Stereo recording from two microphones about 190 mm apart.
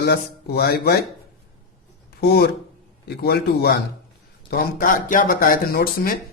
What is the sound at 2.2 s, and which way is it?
Mantra, 55° left (ahead or behind).